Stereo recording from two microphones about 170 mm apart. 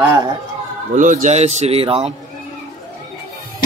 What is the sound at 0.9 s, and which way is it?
Speech, 50° right (ahead or behind).